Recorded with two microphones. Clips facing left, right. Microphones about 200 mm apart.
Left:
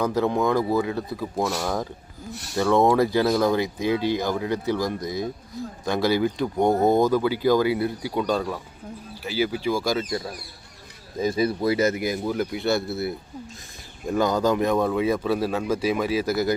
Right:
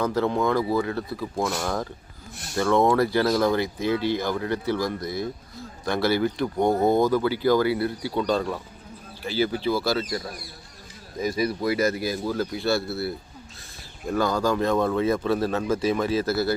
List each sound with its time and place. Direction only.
0.0 s speech: 15° left (ahead or behind)
8.2 s a man's voice: 5° left (ahead or behind)